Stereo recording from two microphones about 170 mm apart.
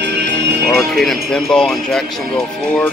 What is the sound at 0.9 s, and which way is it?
Music, 5° left (ahead or behind).